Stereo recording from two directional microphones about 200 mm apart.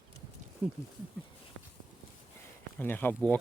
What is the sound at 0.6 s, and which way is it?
Speech, 10° right (ahead or behind).